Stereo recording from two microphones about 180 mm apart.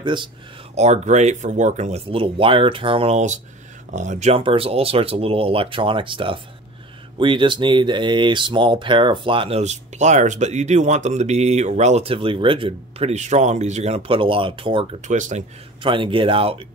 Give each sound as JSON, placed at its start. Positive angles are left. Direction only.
{"t": 0.0, "sound": "speech", "side_deg": -25}
{"t": 0.7, "sound": "speech", "side_deg": -40}
{"t": 15.0, "sound": "speech", "side_deg": -45}
{"t": 15.8, "sound": "speech", "side_deg": -30}